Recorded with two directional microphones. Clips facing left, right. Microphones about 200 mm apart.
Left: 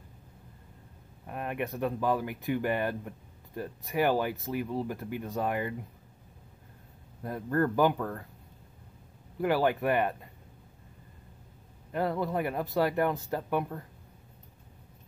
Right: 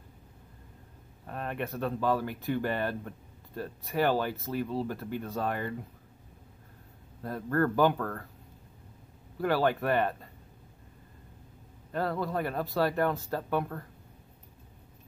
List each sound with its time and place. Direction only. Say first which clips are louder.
1.2 s speech: left 1 dB; 15° left (ahead or behind)
7.2 s speech: even; 15° left (ahead or behind)
9.4 s speech: left 1 dB; 15° left (ahead or behind)
11.9 s a man's voice: left 1 dB; 20° left (ahead or behind)